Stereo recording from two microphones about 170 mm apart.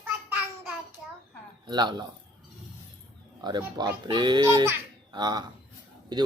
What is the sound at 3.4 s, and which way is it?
Speech, 25° right (ahead or behind).